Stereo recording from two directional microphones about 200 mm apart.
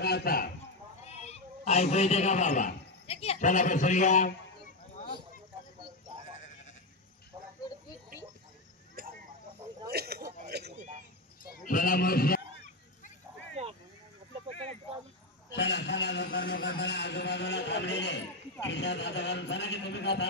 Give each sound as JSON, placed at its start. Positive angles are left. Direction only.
{"t": 0.0, "sound": "speech", "side_deg": 50}
{"t": 1.0, "sound": "a man's voice", "side_deg": 30}
{"t": 9.0, "sound": "a sound", "side_deg": -45}
{"t": 11.6, "sound": "speech", "side_deg": 45}
{"t": 15.5, "sound": "a man's voice", "side_deg": 60}